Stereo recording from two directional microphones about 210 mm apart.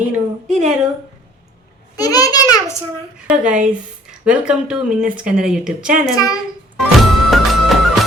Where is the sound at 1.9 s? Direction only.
15° left (ahead or behind).